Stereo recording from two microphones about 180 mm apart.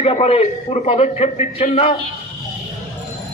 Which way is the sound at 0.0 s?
35° left (ahead or behind).